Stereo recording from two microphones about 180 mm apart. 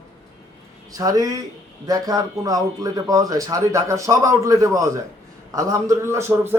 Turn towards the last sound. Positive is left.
turn(degrees=-15)  # may be behind; listen again after turning